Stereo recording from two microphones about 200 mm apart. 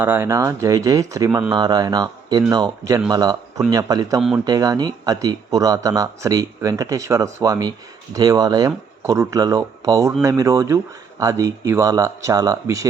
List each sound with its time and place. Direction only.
0.0 s speech: 10° right (ahead or behind)